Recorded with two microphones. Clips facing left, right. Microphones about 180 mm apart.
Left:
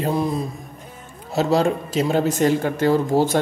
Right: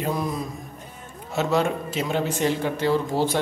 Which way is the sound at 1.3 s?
35° left (ahead or behind).